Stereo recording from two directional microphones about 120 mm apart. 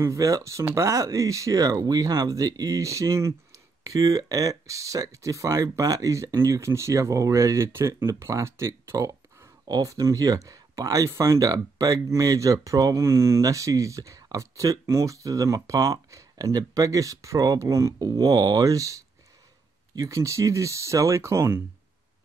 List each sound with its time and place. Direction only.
0.0 s speech: 25° right (ahead or behind)